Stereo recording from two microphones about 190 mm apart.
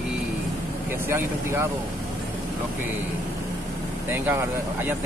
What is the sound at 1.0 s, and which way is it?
Speech, 10° right (ahead or behind).